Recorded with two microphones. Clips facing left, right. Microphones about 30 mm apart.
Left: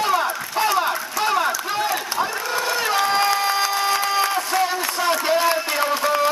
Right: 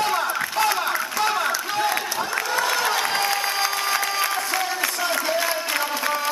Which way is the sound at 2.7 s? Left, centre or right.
Centre.